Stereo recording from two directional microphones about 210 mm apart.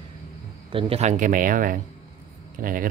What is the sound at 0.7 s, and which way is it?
Speech, 25° right (ahead or behind).